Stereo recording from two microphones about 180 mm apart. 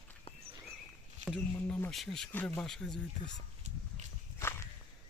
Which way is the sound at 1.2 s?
5° left (ahead or behind).